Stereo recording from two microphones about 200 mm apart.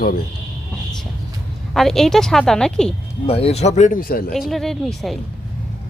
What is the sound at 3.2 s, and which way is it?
Speech, 30° left (ahead or behind).